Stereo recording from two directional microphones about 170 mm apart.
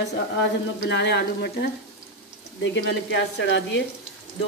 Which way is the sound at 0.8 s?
90° left.